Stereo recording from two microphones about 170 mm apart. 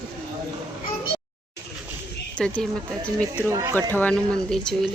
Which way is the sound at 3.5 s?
15° right (ahead or behind).